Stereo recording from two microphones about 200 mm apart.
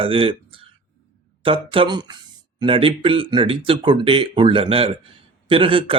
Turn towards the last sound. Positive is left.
turn(degrees=-25)  # may be behind; listen again after turning